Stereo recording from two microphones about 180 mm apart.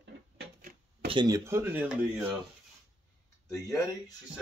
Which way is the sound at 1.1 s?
20° right (ahead or behind).